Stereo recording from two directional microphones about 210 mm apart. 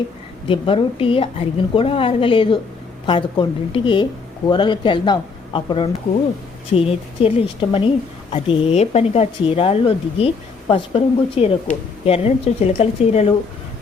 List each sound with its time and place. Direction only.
0.4 s a woman's voice: 25° left (ahead or behind)